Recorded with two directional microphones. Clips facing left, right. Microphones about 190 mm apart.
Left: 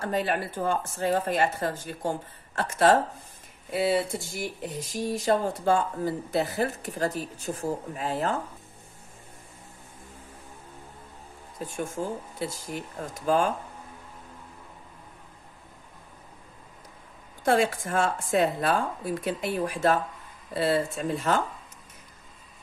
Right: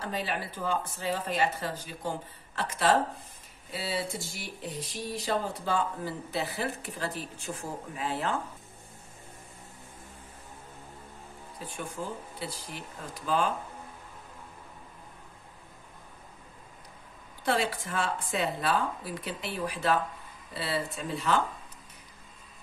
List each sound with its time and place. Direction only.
0.0 s speech: 50° left (ahead or behind)
11.6 s speech: 45° left (ahead or behind)
17.5 s speech: 45° left (ahead or behind)